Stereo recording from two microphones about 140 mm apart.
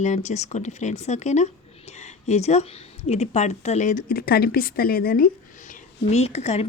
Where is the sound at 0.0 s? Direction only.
55° left (ahead or behind).